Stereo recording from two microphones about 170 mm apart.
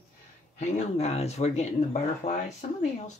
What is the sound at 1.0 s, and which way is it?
Speech, 40° left (ahead or behind).